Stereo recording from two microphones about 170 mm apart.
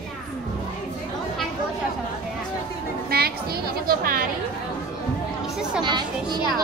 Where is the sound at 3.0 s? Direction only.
65° right (ahead or behind).